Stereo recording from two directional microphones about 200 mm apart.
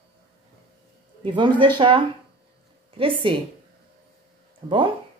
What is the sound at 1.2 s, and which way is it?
Speech, 25° right (ahead or behind).